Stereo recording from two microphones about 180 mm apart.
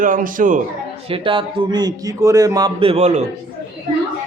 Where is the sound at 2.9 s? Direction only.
40° right (ahead or behind).